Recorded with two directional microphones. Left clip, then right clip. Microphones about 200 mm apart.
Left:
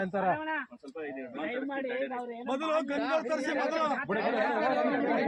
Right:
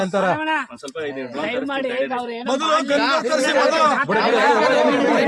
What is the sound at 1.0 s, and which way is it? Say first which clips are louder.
Speech: right 12 dB; 65° right (ahead or behind).